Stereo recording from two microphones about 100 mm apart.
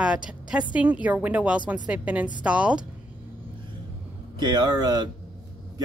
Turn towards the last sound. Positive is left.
turn(degrees=-45)  # may be behind; listen again after turning